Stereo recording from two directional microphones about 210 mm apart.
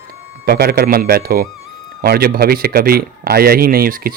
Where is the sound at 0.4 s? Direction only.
45° right (ahead or behind).